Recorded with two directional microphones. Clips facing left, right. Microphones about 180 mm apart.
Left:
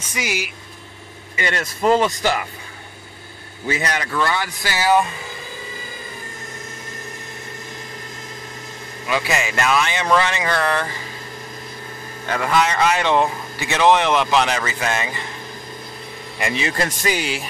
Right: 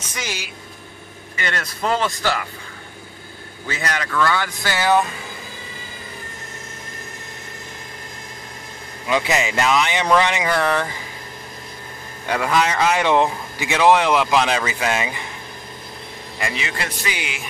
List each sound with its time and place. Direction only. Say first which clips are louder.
0.1 s speech: left 5 dB; 10° left (ahead or behind)
3.6 s speech: left 3 dB; 15° left (ahead or behind)
9.0 s speech: right 2 dB; 20° right (ahead or behind)
12.3 s speech: even; 10° right (ahead or behind)
16.3 s a man's voice: left 5 dB; 25° left (ahead or behind)